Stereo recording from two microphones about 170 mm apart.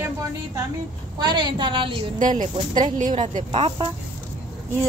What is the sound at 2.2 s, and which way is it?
A woman's voice, 50° right (ahead or behind).